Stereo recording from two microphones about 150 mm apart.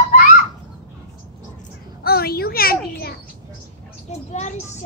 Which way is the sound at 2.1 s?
90° left.